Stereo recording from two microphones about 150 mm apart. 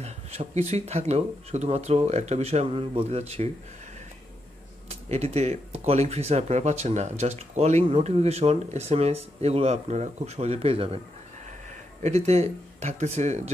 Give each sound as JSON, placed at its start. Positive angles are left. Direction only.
{"t": 0.0, "sound": "speech", "side_deg": -45}
{"t": 4.8, "sound": "speech", "side_deg": -45}
{"t": 12.0, "sound": "speech", "side_deg": -45}